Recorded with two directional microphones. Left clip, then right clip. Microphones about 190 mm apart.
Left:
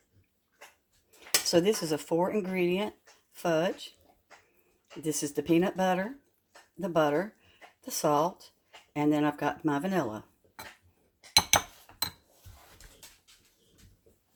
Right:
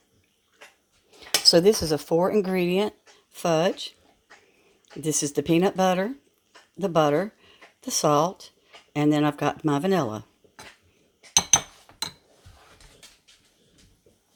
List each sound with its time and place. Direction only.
1.5 s speech: 30° right (ahead or behind)
2.5 s speech: 40° right (ahead or behind)
5.0 s speech: 45° right (ahead or behind)